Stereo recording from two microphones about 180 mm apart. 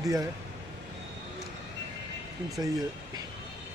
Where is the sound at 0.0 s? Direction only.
20° right (ahead or behind).